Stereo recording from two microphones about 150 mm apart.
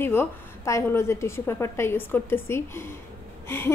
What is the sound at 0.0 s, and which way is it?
A woman's voice, 15° left (ahead or behind).